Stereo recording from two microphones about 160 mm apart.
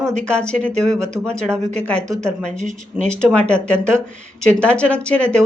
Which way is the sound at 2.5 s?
50° right (ahead or behind).